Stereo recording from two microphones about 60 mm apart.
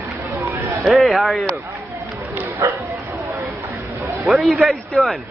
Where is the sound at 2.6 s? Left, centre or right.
Right.